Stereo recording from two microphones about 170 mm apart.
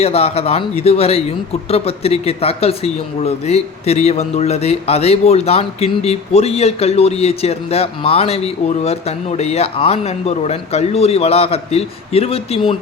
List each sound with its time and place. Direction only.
0.0 s speech: 35° left (ahead or behind)